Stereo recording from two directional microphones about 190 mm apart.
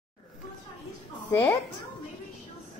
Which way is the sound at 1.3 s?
15° left (ahead or behind).